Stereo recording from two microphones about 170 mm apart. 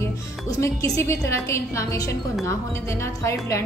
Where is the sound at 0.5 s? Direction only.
20° left (ahead or behind).